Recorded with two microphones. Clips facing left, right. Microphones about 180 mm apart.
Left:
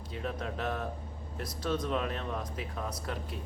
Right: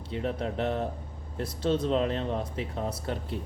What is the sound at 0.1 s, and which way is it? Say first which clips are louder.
Speech: right 6 dB; 30° right (ahead or behind).